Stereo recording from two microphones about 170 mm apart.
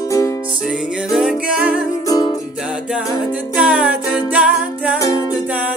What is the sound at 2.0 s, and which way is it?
Music, 20° left (ahead or behind).